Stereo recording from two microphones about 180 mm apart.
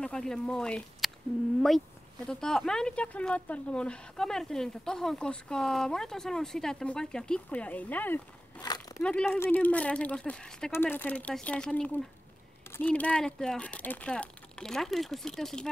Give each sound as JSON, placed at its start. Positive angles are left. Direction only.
{"t": 0.0, "sound": "speech", "side_deg": 5}
{"t": 2.2, "sound": "speech", "side_deg": 5}
{"t": 8.5, "sound": "a sound", "side_deg": 20}
{"t": 9.0, "sound": "speech", "side_deg": 5}